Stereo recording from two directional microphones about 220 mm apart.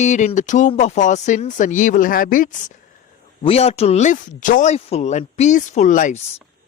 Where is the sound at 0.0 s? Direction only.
30° left (ahead or behind).